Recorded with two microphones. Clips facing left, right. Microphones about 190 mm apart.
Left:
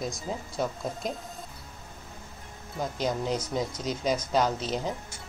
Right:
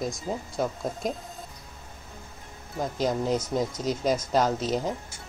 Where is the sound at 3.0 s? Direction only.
Centre (ahead or behind).